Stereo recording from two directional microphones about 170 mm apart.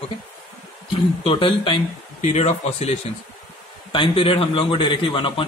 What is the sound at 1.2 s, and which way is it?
Speech, 30° left (ahead or behind).